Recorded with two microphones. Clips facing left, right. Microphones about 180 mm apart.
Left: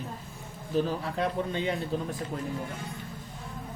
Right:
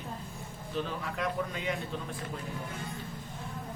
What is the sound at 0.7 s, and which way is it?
Speech, 30° left (ahead or behind).